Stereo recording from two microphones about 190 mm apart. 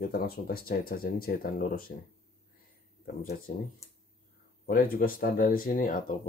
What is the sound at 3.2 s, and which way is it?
Speech, 50° left (ahead or behind).